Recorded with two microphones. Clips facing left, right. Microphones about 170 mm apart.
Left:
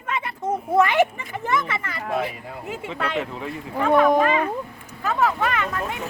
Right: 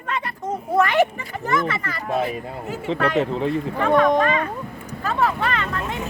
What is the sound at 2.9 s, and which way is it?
Speech, 30° right (ahead or behind).